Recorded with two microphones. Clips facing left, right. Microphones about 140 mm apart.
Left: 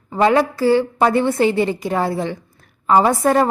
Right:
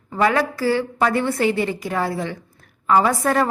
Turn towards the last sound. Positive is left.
turn(degrees=25)  # may be behind; listen again after turning